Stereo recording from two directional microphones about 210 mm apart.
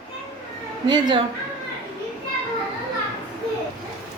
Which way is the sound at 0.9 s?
20° right (ahead or behind).